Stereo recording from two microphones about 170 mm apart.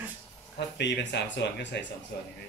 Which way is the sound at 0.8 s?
90° left.